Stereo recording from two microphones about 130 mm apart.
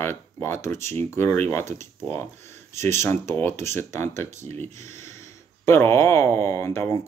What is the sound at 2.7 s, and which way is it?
Speech, 20° left (ahead or behind).